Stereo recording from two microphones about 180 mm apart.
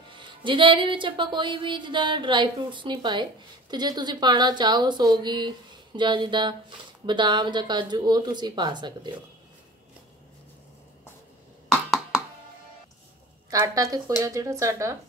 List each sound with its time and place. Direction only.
0.1 s music: 25° right (ahead or behind)
13.5 s music: 20° right (ahead or behind)
14.2 s speech: 20° right (ahead or behind)